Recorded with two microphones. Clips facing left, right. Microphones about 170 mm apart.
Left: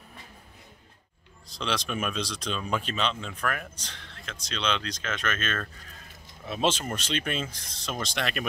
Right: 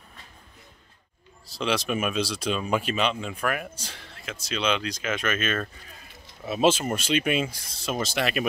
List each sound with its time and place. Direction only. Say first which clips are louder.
1.5 s speech: right 5 dB; 5° right (ahead or behind)